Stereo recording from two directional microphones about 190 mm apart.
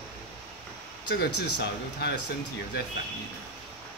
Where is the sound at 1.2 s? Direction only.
60° left (ahead or behind).